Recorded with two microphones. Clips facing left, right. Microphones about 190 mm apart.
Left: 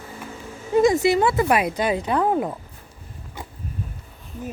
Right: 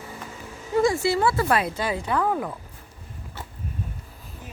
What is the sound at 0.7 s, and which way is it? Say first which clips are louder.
Music: left 4 dB; 20° left (ahead or behind).